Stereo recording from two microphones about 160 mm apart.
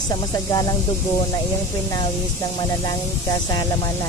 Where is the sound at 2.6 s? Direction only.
25° left (ahead or behind).